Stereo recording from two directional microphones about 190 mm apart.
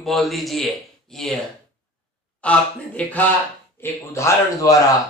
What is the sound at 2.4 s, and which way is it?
Speech, 5° left (ahead or behind).